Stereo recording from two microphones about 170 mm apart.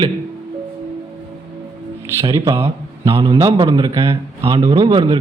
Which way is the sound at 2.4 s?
35° right (ahead or behind).